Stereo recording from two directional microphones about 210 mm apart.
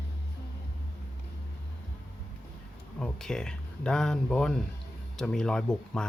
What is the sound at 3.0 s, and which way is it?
Speech, 5° left (ahead or behind).